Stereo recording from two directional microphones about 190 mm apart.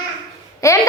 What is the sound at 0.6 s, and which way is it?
Speech, 15° left (ahead or behind).